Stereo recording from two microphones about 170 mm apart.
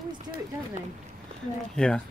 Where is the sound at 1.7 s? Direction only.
5° left (ahead or behind).